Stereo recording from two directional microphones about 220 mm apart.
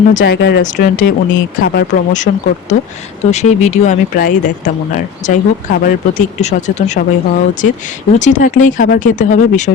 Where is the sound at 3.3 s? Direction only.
30° left (ahead or behind).